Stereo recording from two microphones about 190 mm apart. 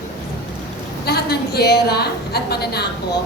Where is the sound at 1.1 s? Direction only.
55° left (ahead or behind).